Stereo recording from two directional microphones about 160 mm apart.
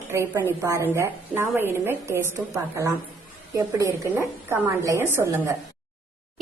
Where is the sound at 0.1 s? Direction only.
15° right (ahead or behind).